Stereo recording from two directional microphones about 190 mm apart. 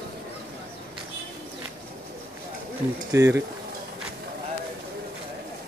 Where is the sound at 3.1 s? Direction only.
15° right (ahead or behind).